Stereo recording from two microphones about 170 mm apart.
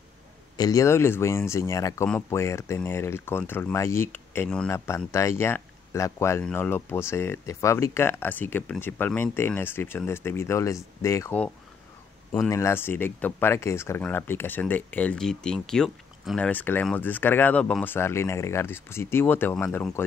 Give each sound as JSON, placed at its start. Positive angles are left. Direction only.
{"t": 0.6, "sound": "speech", "side_deg": 20}
{"t": 12.4, "sound": "speech", "side_deg": 15}